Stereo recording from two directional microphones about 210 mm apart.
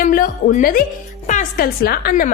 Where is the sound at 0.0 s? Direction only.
45° left (ahead or behind).